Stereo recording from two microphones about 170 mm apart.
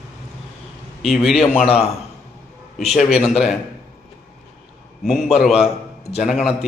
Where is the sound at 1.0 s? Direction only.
Centre (ahead or behind).